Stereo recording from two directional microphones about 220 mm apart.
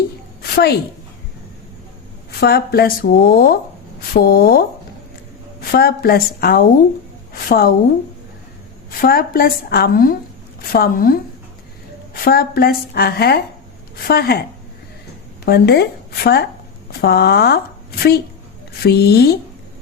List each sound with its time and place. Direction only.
0.5 s speech: 45° left (ahead or behind)
2.4 s speech: 45° left (ahead or behind)
5.7 s speech: 45° left (ahead or behind)
8.9 s a woman's voice: 40° left (ahead or behind)
12.2 s speech: 45° left (ahead or behind)
15.4 s speech: 45° left (ahead or behind)